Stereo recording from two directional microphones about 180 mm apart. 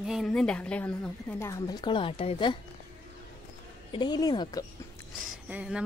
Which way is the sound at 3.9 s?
25° left (ahead or behind).